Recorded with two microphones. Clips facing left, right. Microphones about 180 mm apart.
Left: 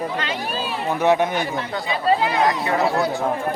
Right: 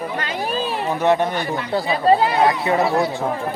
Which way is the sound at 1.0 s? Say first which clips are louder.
Even; 15° left (ahead or behind).